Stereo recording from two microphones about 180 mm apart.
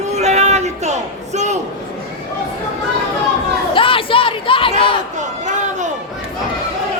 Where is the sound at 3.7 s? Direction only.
30° left (ahead or behind).